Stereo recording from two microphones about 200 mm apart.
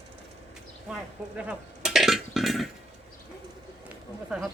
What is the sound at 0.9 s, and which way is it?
Burping, 5° right (ahead or behind).